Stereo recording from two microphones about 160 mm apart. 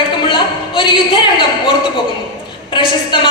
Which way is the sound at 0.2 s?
30° left (ahead or behind).